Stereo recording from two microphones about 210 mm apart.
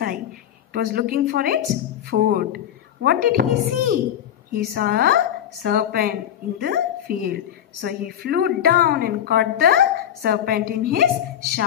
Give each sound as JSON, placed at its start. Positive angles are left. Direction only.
{"t": 0.7, "sound": "a woman's voice", "side_deg": -45}